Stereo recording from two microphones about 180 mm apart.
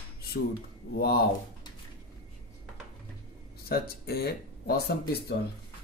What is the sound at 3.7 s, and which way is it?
Speech, 60° left (ahead or behind).